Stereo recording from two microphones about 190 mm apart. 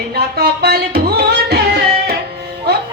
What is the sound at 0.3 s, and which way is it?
Music, 55° right (ahead or behind).